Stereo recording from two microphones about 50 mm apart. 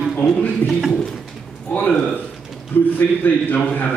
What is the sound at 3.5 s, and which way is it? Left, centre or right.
Speech, left.